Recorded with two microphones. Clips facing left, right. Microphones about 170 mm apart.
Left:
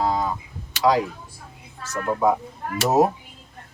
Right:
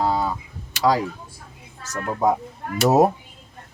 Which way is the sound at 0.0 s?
30° right (ahead or behind).